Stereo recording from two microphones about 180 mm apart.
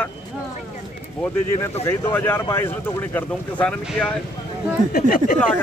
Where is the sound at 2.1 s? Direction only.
10° left (ahead or behind).